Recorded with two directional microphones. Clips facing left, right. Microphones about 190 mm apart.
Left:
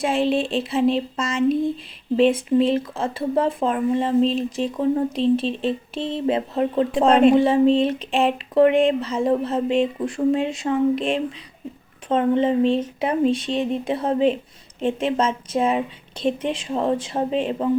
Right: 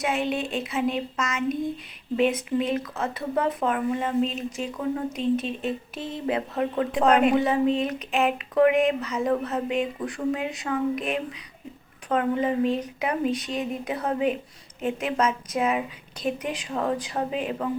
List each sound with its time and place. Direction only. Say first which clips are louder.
0.0 s speech: left 6 dB; 30° left (ahead or behind)